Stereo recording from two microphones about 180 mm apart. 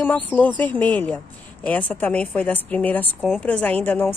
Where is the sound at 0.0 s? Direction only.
10° left (ahead or behind).